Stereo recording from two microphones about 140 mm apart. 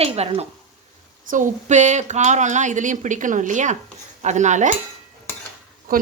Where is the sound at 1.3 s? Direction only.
60° right (ahead or behind).